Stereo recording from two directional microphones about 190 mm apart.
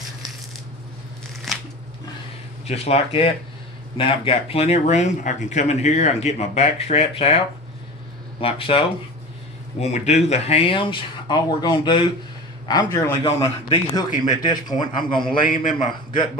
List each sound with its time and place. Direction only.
2.6 s speech: 35° left (ahead or behind)
15.4 s a man's voice: 45° left (ahead or behind)